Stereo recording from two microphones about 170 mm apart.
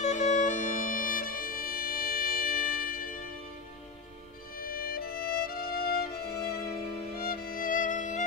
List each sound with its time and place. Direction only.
0.0 s music: 45° left (ahead or behind)
4.6 s music: 60° left (ahead or behind)